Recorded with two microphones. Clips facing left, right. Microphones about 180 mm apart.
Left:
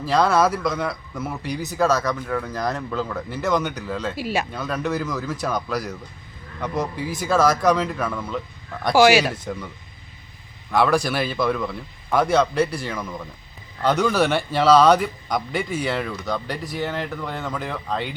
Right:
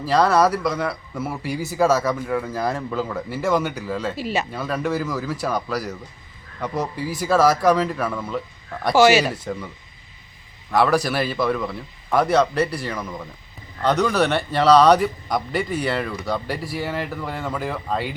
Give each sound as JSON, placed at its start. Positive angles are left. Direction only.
{"t": 0.0, "sound": "a man's voice", "side_deg": 0}
{"t": 10.7, "sound": "a man's voice", "side_deg": -5}